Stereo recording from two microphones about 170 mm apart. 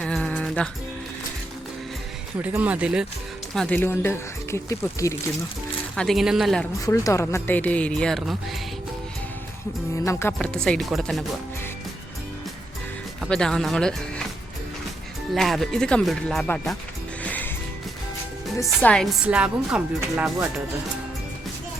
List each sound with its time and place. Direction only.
0.0 s music: 5° left (ahead or behind)
2.4 s speech: 10° right (ahead or behind)
3.5 s speech: 5° left (ahead or behind)
6.0 s speech: centre (ahead or behind)
6.8 s speech: 20° left (ahead or behind); by 8.4 s 5° left (ahead or behind)
9.9 s speech: 15° left (ahead or behind)
10.3 s speech: 5° left (ahead or behind)
13.2 s speech: 5° left (ahead or behind)
15.4 s speech: centre (ahead or behind)
17.2 s music: 10° left (ahead or behind)
18.8 s speech: 5° left (ahead or behind)
19.2 s speech: 5° right (ahead or behind)